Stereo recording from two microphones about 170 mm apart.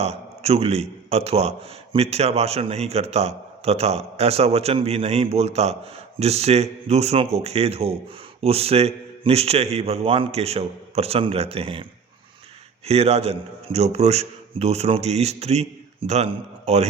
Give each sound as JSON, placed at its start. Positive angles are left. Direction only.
{"t": 0.0, "sound": "a man's voice", "side_deg": -40}